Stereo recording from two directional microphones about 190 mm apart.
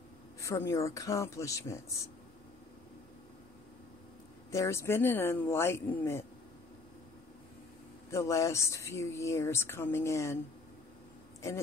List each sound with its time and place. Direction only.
0.4 s speech: 15° left (ahead or behind)
4.5 s speech: 15° left (ahead or behind)
8.1 s speech: 15° left (ahead or behind)